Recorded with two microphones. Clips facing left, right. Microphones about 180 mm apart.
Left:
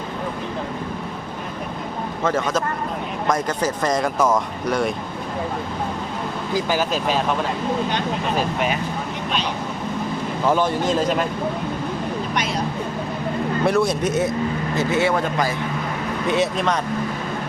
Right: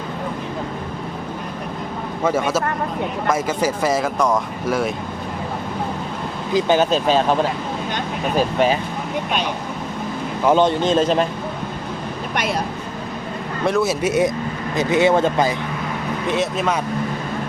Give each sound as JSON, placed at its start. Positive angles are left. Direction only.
{"t": 2.2, "sound": "a man's voice", "side_deg": -10}
{"t": 6.5, "sound": "speech", "side_deg": -25}
{"t": 8.5, "sound": "speech", "side_deg": -30}
{"t": 10.5, "sound": "speech", "side_deg": -25}
{"t": 13.7, "sound": "a man's voice", "side_deg": 0}
{"t": 16.2, "sound": "speech", "side_deg": 0}